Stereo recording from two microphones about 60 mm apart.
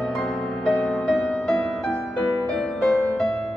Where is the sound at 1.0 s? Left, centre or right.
Left.